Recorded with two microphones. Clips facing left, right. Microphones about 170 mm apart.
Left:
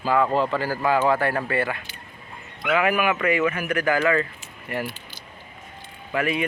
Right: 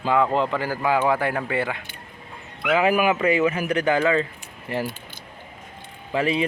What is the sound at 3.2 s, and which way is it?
A man's voice, 25° right (ahead or behind).